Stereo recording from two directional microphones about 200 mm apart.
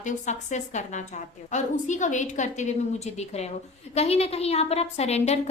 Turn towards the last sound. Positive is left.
turn(degrees=30)  # may be behind; listen again after turning